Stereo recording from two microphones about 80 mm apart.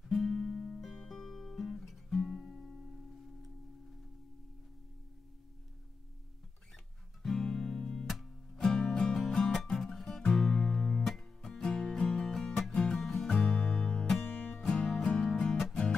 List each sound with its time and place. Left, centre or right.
0.0 s music: centre
7.2 s music: centre
14.3 s music: left
14.6 s music: centre